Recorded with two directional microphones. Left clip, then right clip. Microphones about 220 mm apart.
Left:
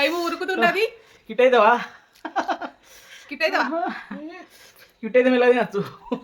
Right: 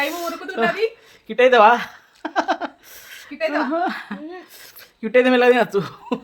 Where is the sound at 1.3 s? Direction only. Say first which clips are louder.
Right 3 dB; 35° right (ahead or behind).